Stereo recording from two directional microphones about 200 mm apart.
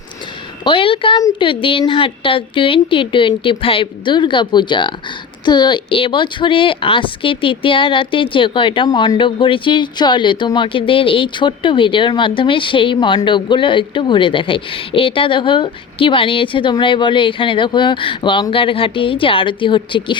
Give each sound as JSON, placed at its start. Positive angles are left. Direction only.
{"t": 0.6, "sound": "speech", "side_deg": 25}